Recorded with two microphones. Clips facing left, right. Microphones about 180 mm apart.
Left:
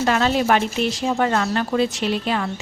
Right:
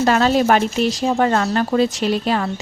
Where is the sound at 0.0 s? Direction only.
40° right (ahead or behind).